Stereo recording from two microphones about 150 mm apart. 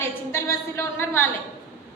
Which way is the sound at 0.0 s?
15° left (ahead or behind).